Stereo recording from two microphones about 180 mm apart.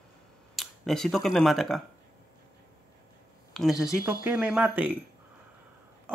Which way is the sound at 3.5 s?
5° left (ahead or behind).